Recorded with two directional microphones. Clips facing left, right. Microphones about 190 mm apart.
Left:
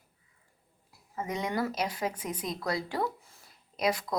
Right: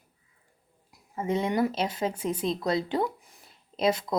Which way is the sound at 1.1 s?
30° right (ahead or behind).